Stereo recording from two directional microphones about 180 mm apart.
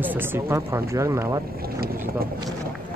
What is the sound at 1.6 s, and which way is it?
Speech, 55° right (ahead or behind).